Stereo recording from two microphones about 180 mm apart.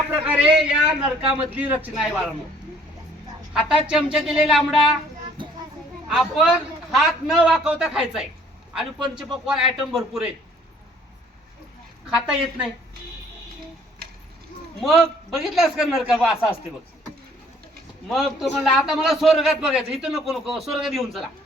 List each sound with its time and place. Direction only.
0.3 s a sound: 5° right (ahead or behind)
1.3 s a man's voice: 10° right (ahead or behind)
3.5 s a man's voice: 5° right (ahead or behind)
6.1 s a man's voice: centre (ahead or behind)
12.1 s a man's voice: 5° right (ahead or behind)
14.0 s a sound: 55° right (ahead or behind)
14.8 s a man's voice: centre (ahead or behind)
18.1 s a man's voice: centre (ahead or behind)